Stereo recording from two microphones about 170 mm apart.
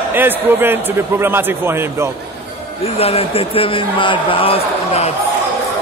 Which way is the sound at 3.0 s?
35° left (ahead or behind).